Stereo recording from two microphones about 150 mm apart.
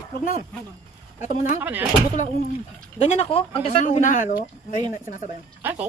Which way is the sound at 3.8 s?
55° left (ahead or behind).